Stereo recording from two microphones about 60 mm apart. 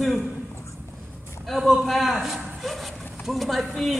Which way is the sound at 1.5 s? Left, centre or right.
Centre.